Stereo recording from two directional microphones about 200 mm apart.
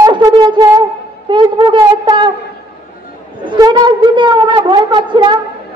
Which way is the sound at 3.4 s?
20° right (ahead or behind).